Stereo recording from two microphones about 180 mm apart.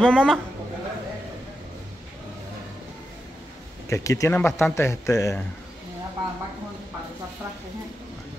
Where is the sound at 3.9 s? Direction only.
15° left (ahead or behind).